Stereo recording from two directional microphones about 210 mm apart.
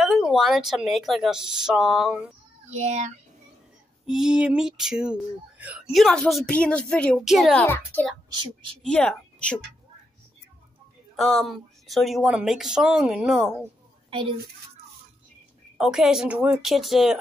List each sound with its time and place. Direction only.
0.0 s speech: centre (ahead or behind)
2.7 s speech: 35° right (ahead or behind)
4.0 s speech: centre (ahead or behind)
7.6 s a child's voice: 10° left (ahead or behind)
11.1 s speech: centre (ahead or behind)
15.8 s speech: centre (ahead or behind)